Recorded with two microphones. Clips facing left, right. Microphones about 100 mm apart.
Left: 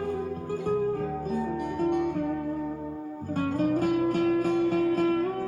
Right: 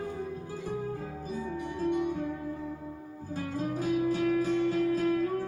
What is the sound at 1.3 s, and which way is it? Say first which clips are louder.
Music: left 2 dB; 55° left (ahead or behind).